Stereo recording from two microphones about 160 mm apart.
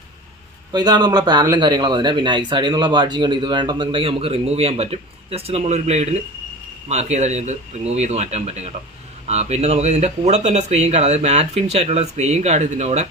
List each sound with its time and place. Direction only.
0.7 s speech: 25° right (ahead or behind); by 13.1 s 45° right (ahead or behind)